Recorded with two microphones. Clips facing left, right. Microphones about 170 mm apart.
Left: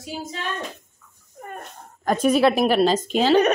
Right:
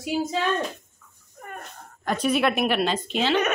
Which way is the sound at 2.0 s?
45° left (ahead or behind).